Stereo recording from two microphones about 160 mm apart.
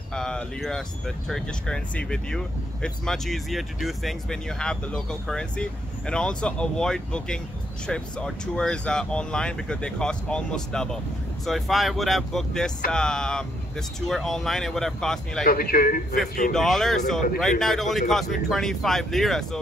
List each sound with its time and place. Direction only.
0.1 s speech: 5° left (ahead or behind)
15.4 s a man's voice: 65° left (ahead or behind)
16.5 s speech: centre (ahead or behind)